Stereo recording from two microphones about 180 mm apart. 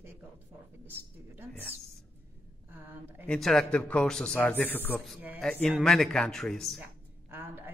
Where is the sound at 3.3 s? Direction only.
Centre (ahead or behind).